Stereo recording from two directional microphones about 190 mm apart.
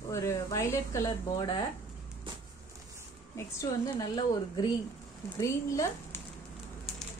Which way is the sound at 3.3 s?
20° left (ahead or behind).